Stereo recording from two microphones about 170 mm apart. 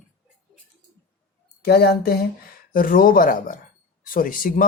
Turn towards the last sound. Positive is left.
turn(degrees=55)  # may be behind; listen again after turning